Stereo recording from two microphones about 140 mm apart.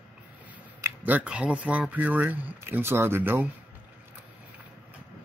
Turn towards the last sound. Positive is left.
turn(degrees=-15)  # may be behind; listen again after turning